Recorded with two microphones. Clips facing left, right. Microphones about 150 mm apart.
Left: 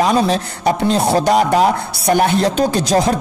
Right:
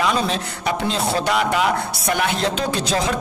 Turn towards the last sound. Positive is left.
turn(degrees=40)  # may be behind; listen again after turning